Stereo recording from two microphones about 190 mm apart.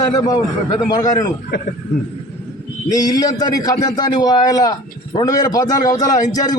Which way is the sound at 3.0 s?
20° left (ahead or behind).